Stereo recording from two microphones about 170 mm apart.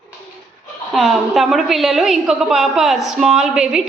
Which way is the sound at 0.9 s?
Centre (ahead or behind).